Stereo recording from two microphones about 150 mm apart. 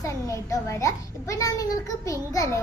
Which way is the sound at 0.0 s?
20° left (ahead or behind).